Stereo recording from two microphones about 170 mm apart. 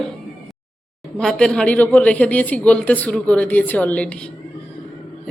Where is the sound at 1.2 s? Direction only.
5° left (ahead or behind).